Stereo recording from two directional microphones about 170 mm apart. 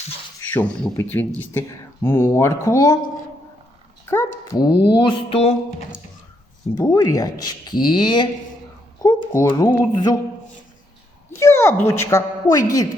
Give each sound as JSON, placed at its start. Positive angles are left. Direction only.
{"t": 0.5, "sound": "speech", "side_deg": 10}
{"t": 4.1, "sound": "speech", "side_deg": 15}
{"t": 4.7, "sound": "speech", "side_deg": 65}
{"t": 4.9, "sound": "speech", "side_deg": 30}
{"t": 6.7, "sound": "speech", "side_deg": 20}
{"t": 9.0, "sound": "speech", "side_deg": 15}
{"t": 11.3, "sound": "a woman's voice", "side_deg": 15}